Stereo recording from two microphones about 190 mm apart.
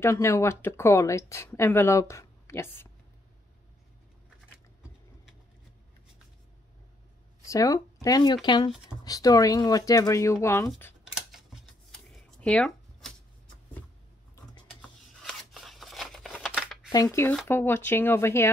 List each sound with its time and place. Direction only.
0.0 s speech: 15° left (ahead or behind)
7.4 s speech: 15° left (ahead or behind)
11.1 s shuffling cards: centre (ahead or behind)
15.2 s scissors: centre (ahead or behind)
16.9 s speech: 15° left (ahead or behind)